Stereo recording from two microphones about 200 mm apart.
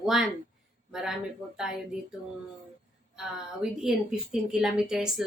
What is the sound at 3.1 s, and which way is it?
A woman's voice, centre (ahead or behind).